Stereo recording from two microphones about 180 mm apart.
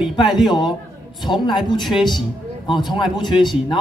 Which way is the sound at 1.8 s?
Centre (ahead or behind).